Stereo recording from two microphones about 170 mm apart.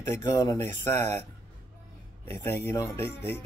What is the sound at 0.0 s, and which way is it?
Speech, 20° left (ahead or behind).